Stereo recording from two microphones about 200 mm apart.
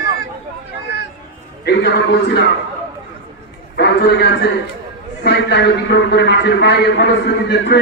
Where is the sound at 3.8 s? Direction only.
60° left (ahead or behind).